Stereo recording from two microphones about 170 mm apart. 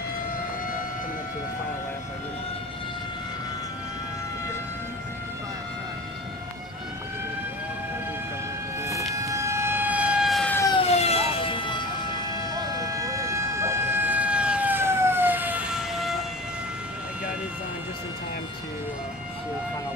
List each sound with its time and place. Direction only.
9.1 s siren: 20° right (ahead or behind); by 10.5 s centre (ahead or behind)
10.9 s emergency vehicle: 40° left (ahead or behind)
12.7 s siren: 20° right (ahead or behind); by 16.2 s 5° right (ahead or behind)